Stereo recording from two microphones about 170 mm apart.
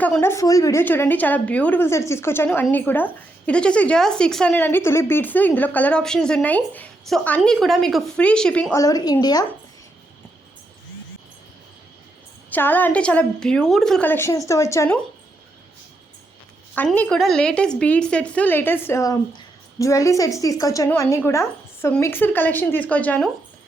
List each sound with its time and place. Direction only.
0.0 s speech: 10° left (ahead or behind)
8.7 s a woman's voice: 20° left (ahead or behind)
12.5 s speech: 10° left (ahead or behind)
16.7 s speech: 10° left (ahead or behind)